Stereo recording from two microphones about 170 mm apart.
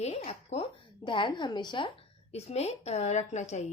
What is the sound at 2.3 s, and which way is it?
Speech, 40° left (ahead or behind).